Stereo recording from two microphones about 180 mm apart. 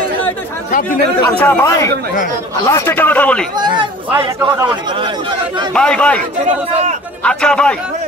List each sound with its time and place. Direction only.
1.4 s speech: 15° left (ahead or behind)
3.5 s speech: 25° right (ahead or behind)
4.1 s speech: 10° right (ahead or behind)
5.7 s a man's voice: 5° left (ahead or behind)
6.4 s a man's voice: 40° right (ahead or behind)
7.2 s a man's voice: 5° left (ahead or behind)